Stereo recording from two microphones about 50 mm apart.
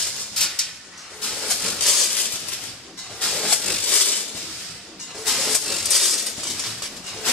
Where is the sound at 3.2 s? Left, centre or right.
Centre.